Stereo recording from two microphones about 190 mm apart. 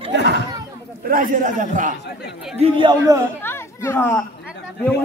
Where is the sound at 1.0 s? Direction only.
45° right (ahead or behind).